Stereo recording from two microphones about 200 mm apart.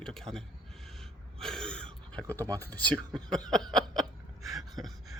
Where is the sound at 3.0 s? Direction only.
20° right (ahead or behind).